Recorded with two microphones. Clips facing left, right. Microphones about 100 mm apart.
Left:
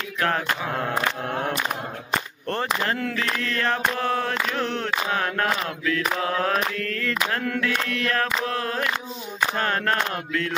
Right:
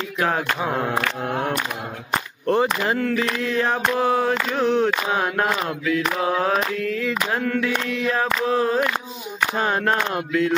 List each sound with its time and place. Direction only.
0.2 s mantra: 10° right (ahead or behind)
2.4 s mantra: 10° right (ahead or behind)